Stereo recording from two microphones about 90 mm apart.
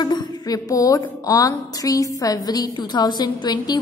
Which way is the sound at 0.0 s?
50° left (ahead or behind).